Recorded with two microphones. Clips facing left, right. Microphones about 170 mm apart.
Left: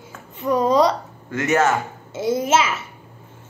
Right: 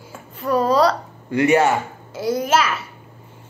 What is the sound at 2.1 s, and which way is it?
Speech, 25° left (ahead or behind).